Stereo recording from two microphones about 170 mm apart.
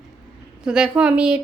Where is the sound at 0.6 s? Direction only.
5° right (ahead or behind).